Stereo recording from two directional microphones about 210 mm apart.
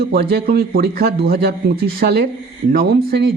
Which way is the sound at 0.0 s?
50° right (ahead or behind).